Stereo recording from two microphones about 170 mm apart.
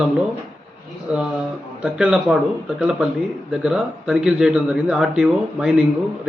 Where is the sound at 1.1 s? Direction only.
5° right (ahead or behind).